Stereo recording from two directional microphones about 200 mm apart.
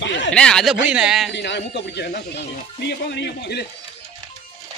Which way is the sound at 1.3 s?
60° left (ahead or behind).